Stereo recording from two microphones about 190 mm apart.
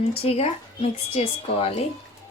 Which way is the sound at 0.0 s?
30° left (ahead or behind).